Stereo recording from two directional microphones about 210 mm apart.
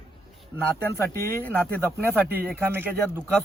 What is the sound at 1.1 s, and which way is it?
Speech, 10° left (ahead or behind).